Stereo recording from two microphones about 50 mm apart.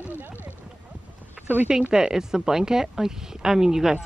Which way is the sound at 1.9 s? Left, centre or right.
Centre.